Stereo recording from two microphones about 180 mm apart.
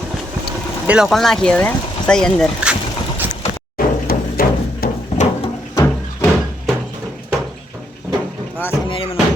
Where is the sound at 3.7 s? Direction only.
55° left (ahead or behind).